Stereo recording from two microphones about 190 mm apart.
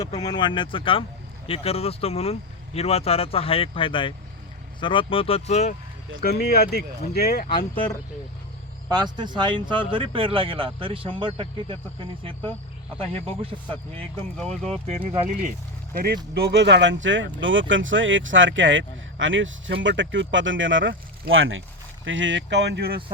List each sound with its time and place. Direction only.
0.2 s speech: 20° left (ahead or behind)
6.2 s speech: 55° left (ahead or behind)
8.9 s speech: 25° right (ahead or behind)
13.2 s speech: 30° right (ahead or behind)
14.3 s speech: 5° left (ahead or behind)
15.3 s speech: 45° right (ahead or behind)
16.3 s speech: 60° right (ahead or behind); by 21.6 s 90° right
22.0 s speech: 80° right; by 23.0 s 60° right (ahead or behind)